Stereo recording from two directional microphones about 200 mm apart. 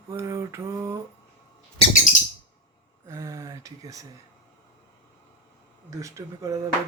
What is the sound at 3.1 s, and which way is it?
Speech, 15° right (ahead or behind).